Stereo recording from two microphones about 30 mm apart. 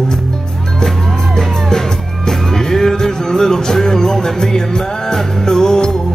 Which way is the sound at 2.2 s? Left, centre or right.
Centre.